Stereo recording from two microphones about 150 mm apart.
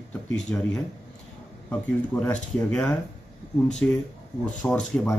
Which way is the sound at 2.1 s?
10° left (ahead or behind).